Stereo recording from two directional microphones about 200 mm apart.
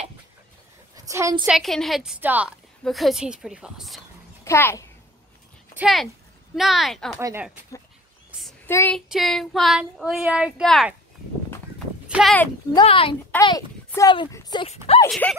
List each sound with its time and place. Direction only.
0.9 s a sound: 15° right (ahead or behind)
1.5 s speech: centre (ahead or behind)
4.5 s a child's voice: 10° left (ahead or behind)
5.8 s speech: centre (ahead or behind)
7.2 s speech: 15° right (ahead or behind)
8.3 s a sound: centre (ahead or behind)
8.6 s child singing: 10° left (ahead or behind)
9.1 s speech: centre (ahead or behind)
12.1 s speech: centre (ahead or behind)
12.7 s speech: 25° left (ahead or behind)
15.0 s speech: 5° left (ahead or behind)